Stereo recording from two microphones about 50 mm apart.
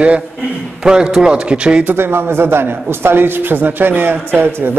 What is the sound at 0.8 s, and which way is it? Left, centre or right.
A man's voice, centre.